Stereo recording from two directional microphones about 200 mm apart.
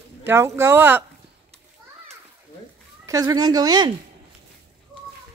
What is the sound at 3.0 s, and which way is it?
Speech, 15° right (ahead or behind).